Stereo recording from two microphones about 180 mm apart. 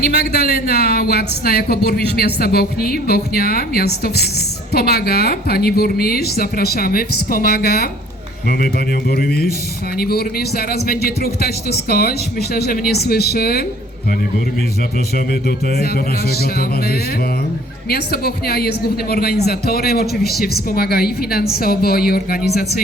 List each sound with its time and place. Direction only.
0.1 s a woman's voice: 60° left (ahead or behind)
15.3 s a woman's voice: 60° left (ahead or behind)